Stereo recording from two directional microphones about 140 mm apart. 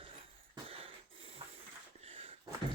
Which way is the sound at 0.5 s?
40° right (ahead or behind).